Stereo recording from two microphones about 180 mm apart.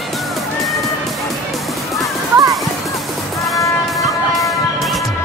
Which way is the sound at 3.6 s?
20° left (ahead or behind).